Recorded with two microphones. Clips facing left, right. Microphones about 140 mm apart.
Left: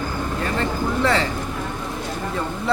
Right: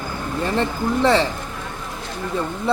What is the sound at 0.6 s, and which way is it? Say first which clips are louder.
Speech: right 2 dB; 25° right (ahead or behind).